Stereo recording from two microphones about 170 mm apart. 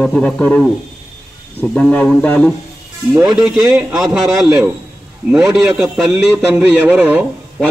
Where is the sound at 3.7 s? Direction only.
15° right (ahead or behind).